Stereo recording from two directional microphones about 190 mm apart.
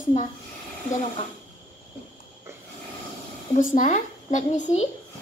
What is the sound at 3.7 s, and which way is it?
Speech, 40° left (ahead or behind).